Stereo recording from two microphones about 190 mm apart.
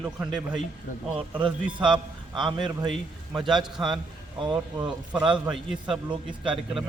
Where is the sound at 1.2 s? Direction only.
25° right (ahead or behind).